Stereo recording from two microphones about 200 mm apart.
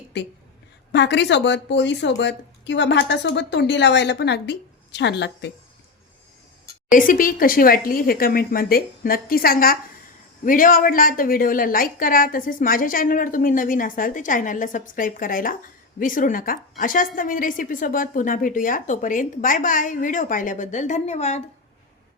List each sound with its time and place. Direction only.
0.1 s a woman's voice: 60° left (ahead or behind)
6.9 s a woman's voice: 45° left (ahead or behind)